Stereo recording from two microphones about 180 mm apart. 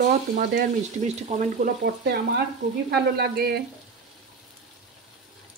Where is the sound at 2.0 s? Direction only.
70° right (ahead or behind).